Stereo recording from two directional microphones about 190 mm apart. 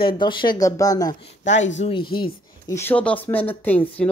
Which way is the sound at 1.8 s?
30° left (ahead or behind).